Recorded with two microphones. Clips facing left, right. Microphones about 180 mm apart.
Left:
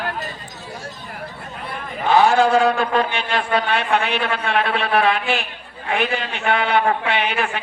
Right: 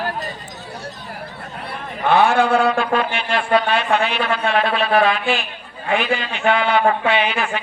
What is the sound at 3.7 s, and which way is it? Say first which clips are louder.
Speech: right 1 dB; 60° left (ahead or behind).